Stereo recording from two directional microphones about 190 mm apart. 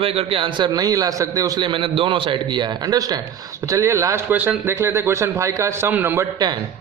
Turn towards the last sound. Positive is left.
turn(degrees=-15)  # may be behind; listen again after turning